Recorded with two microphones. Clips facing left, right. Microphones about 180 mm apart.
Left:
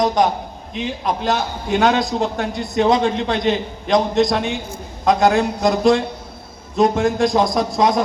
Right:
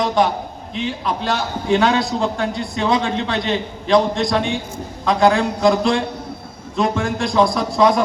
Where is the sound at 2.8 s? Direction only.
45° left (ahead or behind).